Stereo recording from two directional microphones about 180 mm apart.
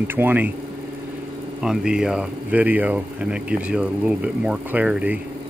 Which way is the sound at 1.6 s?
5° right (ahead or behind).